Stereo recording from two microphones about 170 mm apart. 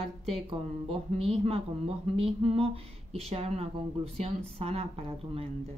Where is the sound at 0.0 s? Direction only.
35° right (ahead or behind).